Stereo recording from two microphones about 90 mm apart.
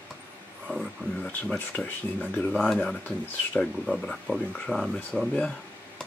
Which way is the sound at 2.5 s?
5° right (ahead or behind).